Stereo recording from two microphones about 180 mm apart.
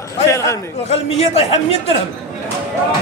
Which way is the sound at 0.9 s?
35° left (ahead or behind).